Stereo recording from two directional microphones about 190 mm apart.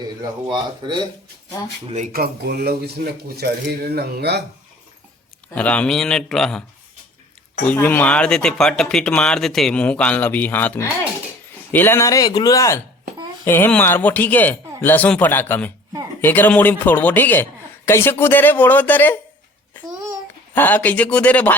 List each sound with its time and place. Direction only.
0.0 s speech: 20° right (ahead or behind)
2.1 s speech: 55° right (ahead or behind)
5.5 s speech: 5° left (ahead or behind)
20.6 s speech: 10° left (ahead or behind)